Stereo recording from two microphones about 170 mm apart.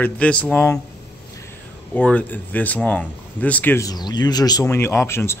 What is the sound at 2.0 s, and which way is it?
A man's voice, 10° left (ahead or behind).